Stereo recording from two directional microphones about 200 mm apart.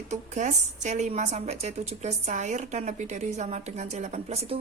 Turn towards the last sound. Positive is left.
turn(degrees=-30)  # may be behind; listen again after turning